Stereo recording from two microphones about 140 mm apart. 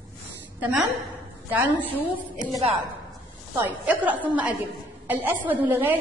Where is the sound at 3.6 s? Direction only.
10° right (ahead or behind).